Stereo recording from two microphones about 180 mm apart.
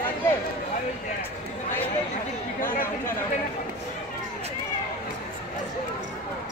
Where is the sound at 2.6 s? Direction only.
50° left (ahead or behind).